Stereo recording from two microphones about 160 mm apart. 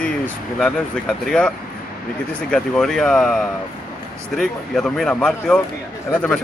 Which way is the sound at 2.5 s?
5° left (ahead or behind).